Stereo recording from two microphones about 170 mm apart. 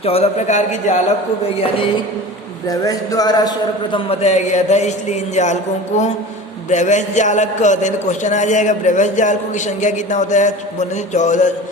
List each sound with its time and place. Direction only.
0.0 s a man's voice: 35° left (ahead or behind)
2.6 s music: 20° left (ahead or behind)
3.9 s a man's voice: 35° left (ahead or behind)
6.7 s a man's voice: 45° left (ahead or behind)